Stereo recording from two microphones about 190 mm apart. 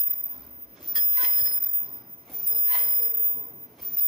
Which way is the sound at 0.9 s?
Centre (ahead or behind).